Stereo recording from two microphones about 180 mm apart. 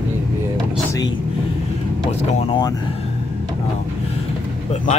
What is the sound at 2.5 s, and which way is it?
Speech, 25° left (ahead or behind).